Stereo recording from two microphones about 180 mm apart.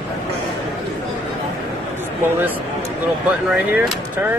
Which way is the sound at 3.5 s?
10° right (ahead or behind).